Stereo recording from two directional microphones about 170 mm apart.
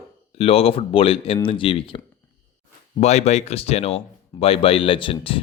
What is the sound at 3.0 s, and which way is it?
Speech, 40° left (ahead or behind).